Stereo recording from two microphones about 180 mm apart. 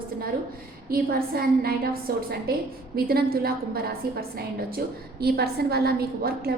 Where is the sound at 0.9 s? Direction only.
55° right (ahead or behind).